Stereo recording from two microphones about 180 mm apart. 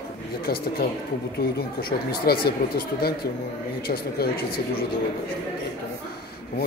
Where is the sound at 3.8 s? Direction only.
60° left (ahead or behind).